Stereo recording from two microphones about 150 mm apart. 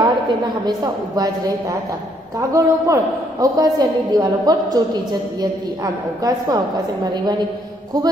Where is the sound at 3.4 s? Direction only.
25° right (ahead or behind).